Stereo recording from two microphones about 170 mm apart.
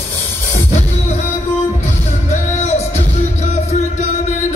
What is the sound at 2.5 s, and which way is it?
Music, 40° left (ahead or behind).